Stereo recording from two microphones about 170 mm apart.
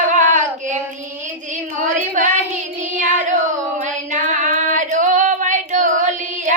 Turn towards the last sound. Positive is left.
turn(degrees=-45)  # may be behind; listen again after turning